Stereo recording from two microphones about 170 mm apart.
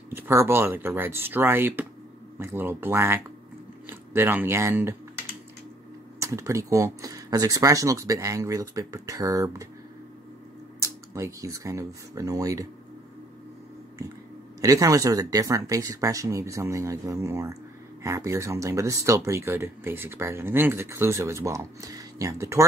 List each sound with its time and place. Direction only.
0.1 s speech: 15° right (ahead or behind)
6.1 s speech: 15° right (ahead or behind)
10.8 s speech: 15° right (ahead or behind)
14.6 s speech: 20° right (ahead or behind)